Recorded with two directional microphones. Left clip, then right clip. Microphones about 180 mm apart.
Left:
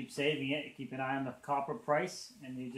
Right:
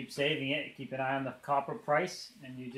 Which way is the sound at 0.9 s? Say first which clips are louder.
Right 3 dB; 45° right (ahead or behind).